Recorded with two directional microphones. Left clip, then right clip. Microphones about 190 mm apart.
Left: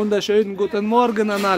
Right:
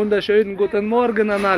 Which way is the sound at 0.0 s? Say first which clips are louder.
Right 1 dB; 20° left (ahead or behind).